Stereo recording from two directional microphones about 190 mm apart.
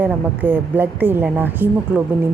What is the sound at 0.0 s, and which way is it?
A woman's voice, 10° right (ahead or behind).